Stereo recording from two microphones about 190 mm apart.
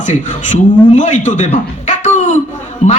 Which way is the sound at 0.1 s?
40° left (ahead or behind).